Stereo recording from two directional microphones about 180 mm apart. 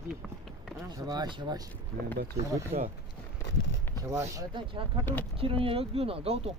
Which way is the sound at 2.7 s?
35° right (ahead or behind).